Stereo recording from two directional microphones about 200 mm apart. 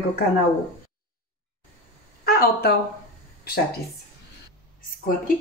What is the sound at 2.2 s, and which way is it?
Speech, 50° left (ahead or behind).